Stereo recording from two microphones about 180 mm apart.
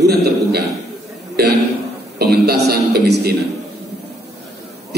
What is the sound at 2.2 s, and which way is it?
A man's voice, 60° right (ahead or behind).